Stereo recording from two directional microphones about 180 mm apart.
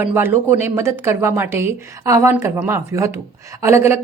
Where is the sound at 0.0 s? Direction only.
10° right (ahead or behind).